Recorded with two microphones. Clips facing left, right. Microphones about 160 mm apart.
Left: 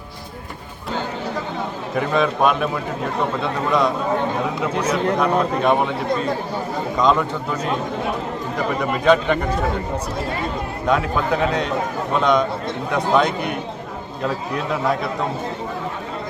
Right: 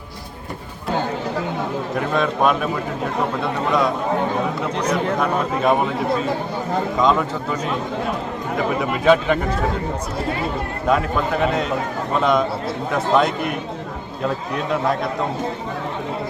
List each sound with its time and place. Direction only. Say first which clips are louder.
2.0 s a man's voice: left 2 dB; centre (ahead or behind)
10.8 s a man's voice: even; centre (ahead or behind)